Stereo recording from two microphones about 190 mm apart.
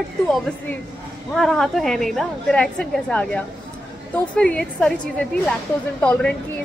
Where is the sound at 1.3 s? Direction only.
Centre (ahead or behind).